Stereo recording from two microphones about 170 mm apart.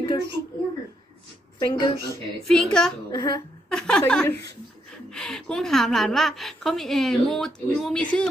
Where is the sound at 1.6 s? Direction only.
25° left (ahead or behind).